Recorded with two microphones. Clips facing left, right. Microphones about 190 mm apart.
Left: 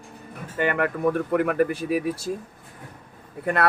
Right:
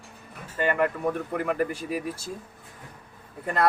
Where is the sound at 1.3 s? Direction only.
65° left (ahead or behind).